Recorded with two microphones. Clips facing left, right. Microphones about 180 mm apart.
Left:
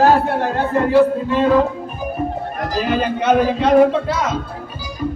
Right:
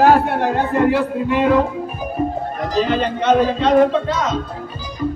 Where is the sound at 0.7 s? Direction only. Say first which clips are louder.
Left 7 dB; 15° right (ahead or behind).